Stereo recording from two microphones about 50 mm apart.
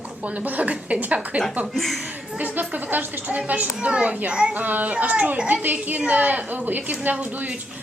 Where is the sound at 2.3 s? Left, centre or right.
Right; by 4.6 s centre.